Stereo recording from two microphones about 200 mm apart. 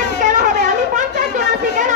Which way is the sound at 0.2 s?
40° right (ahead or behind).